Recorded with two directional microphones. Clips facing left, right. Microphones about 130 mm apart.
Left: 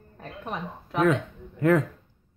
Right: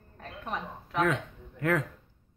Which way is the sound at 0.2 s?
15° left (ahead or behind).